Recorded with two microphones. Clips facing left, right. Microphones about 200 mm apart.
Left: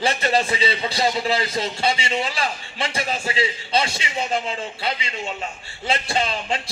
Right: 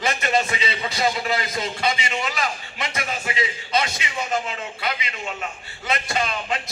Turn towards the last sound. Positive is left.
turn(degrees=30)  # may be behind; listen again after turning